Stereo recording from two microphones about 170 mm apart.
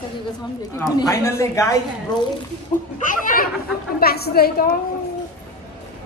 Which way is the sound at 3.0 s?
55° left (ahead or behind).